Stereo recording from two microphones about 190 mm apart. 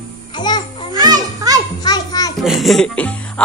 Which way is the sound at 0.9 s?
20° right (ahead or behind).